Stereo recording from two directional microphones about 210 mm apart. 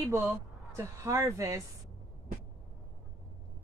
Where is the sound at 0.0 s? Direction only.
15° right (ahead or behind).